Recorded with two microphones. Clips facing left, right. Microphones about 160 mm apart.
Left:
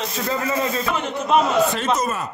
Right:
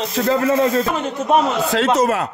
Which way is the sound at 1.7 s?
85° right.